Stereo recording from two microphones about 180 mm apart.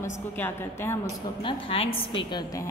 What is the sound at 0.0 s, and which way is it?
Speech, 15° left (ahead or behind).